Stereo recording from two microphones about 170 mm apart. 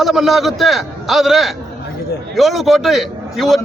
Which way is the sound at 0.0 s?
Centre (ahead or behind).